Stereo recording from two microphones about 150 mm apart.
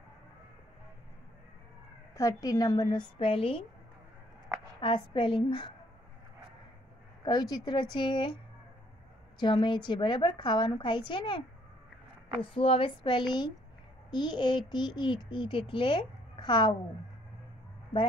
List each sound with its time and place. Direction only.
2.1 s a woman's voice: 20° left (ahead or behind); by 3.6 s 40° left (ahead or behind)
4.7 s a child's voice: 35° left (ahead or behind)
7.2 s a child's voice: 30° left (ahead or behind)
9.4 s a child's voice: 30° left (ahead or behind)
12.5 s a child's voice: 40° left (ahead or behind)